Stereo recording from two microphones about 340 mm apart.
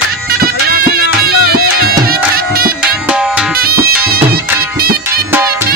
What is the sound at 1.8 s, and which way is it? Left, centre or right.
Music, right.